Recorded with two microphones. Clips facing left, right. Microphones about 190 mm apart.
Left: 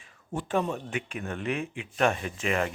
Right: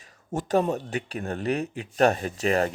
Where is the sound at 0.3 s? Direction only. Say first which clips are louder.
Right 5 dB; 40° right (ahead or behind).